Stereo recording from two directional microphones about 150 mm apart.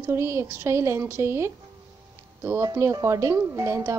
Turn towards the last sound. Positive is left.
turn(degrees=-20)  # may be behind; listen again after turning